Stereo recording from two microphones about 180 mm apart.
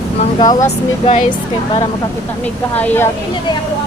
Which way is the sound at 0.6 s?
40° left (ahead or behind).